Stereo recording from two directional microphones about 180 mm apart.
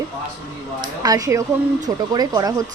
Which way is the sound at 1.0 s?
20° right (ahead or behind).